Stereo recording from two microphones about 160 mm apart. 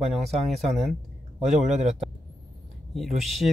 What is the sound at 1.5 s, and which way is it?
Speech, 50° right (ahead or behind).